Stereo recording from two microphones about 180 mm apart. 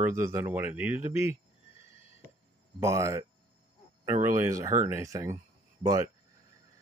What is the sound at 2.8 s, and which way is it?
Speech, 15° right (ahead or behind).